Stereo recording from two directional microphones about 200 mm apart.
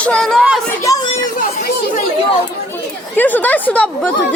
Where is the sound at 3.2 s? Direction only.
10° left (ahead or behind).